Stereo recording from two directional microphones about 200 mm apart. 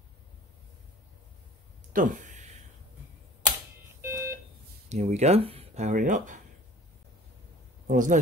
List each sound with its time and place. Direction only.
1.9 s a sound: 40° right (ahead or behind)
4.0 s smoke detector: 15° right (ahead or behind)
4.8 s speech: 35° right (ahead or behind)
7.8 s a man's voice: 40° right (ahead or behind)